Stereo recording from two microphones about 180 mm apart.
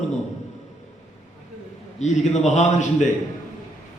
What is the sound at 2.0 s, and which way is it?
A man's voice, 40° left (ahead or behind).